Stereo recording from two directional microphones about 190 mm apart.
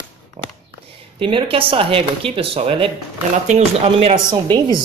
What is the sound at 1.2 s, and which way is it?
Speech, 25° right (ahead or behind).